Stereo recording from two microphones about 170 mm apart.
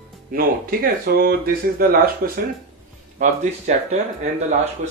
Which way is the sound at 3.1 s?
45° right (ahead or behind).